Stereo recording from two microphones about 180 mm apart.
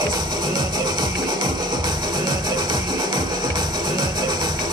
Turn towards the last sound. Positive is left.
turn(degrees=-25)  # may be behind; listen again after turning